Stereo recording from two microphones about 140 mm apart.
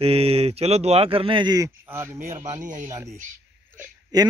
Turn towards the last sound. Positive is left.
turn(degrees=-25)  # may be behind; listen again after turning